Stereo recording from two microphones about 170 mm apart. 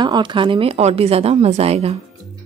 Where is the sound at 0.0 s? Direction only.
25° right (ahead or behind).